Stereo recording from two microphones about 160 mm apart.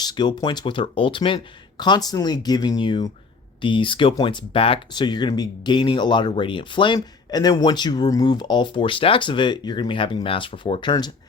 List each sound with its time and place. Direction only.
0.0 s speech: 25° left (ahead or behind)